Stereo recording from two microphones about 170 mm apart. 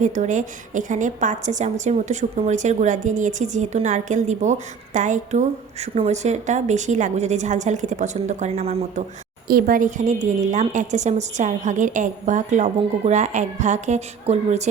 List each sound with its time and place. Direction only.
0.0 s a woman's voice: 45° right (ahead or behind)
9.5 s a woman's voice: 60° right (ahead or behind); by 14.7 s 40° right (ahead or behind)